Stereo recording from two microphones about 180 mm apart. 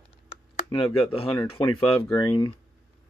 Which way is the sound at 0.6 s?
30° left (ahead or behind).